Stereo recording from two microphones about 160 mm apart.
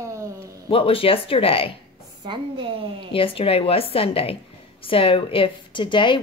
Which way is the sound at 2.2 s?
30° right (ahead or behind).